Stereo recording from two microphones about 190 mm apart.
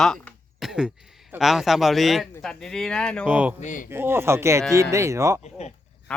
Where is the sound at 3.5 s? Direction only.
40° left (ahead or behind).